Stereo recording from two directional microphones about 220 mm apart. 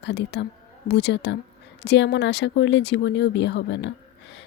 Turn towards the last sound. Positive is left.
turn(degrees=55)  # may be behind; listen again after turning